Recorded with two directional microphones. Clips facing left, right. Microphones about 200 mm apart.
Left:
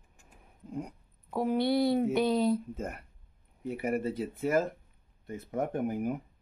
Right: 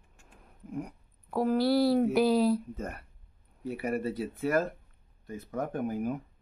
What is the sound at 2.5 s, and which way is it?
Speech, 20° left (ahead or behind).